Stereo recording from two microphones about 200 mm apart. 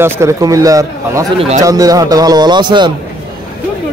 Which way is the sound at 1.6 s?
20° right (ahead or behind).